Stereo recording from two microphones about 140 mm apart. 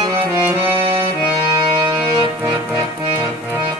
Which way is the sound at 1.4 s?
25° right (ahead or behind).